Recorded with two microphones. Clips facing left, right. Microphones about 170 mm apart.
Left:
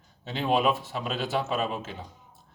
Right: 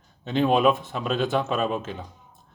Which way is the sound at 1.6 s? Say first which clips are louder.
Right 4 dB; 50° right (ahead or behind).